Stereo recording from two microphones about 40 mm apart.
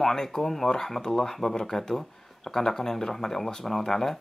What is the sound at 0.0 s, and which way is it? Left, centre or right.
Speech, centre.